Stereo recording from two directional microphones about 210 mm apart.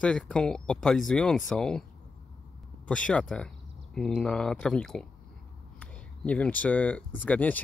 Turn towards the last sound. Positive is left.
turn(degrees=10)  # may be behind; listen again after turning